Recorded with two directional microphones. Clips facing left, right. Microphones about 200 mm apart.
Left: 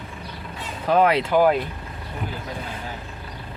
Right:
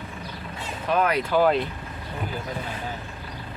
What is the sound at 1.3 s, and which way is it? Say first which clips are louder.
Speech: left 2 dB; 10° left (ahead or behind).